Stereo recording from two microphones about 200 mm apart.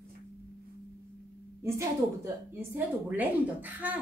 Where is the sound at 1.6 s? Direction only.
15° right (ahead or behind).